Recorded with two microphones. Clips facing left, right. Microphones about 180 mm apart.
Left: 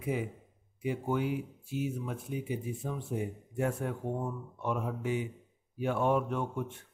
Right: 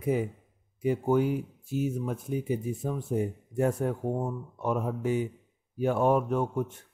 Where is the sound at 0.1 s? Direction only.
40° right (ahead or behind).